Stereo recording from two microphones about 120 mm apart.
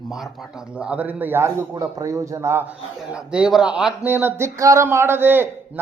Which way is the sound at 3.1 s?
10° right (ahead or behind).